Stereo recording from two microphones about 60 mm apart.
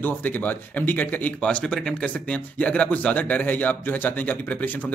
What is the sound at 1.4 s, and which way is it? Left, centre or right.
Speech, centre.